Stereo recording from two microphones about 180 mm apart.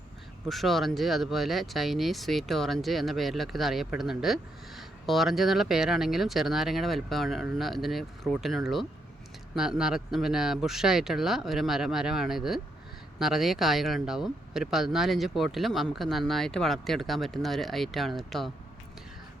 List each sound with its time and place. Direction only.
0.4 s speech: centre (ahead or behind)